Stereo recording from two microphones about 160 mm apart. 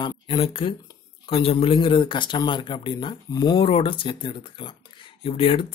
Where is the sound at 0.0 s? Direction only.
30° left (ahead or behind).